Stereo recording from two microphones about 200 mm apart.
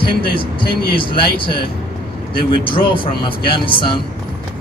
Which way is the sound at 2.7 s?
25° left (ahead or behind).